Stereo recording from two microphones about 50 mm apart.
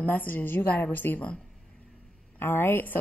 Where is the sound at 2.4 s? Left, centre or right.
Left.